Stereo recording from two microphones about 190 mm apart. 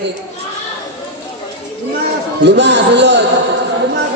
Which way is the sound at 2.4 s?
65° right (ahead or behind).